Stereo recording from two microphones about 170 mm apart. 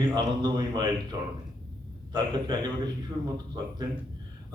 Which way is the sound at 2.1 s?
25° right (ahead or behind).